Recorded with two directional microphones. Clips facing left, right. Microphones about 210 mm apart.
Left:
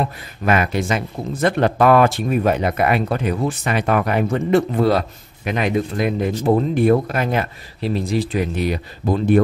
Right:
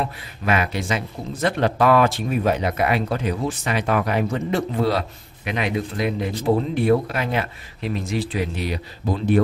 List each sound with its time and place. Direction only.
0.5 s speech: 50° left (ahead or behind)